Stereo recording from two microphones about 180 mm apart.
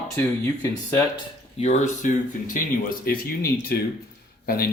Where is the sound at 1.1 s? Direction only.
35° left (ahead or behind).